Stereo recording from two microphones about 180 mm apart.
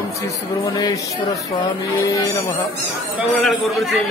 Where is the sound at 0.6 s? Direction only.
20° left (ahead or behind).